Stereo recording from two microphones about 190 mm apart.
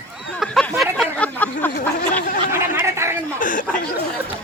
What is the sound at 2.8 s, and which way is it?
Chatter, 15° right (ahead or behind).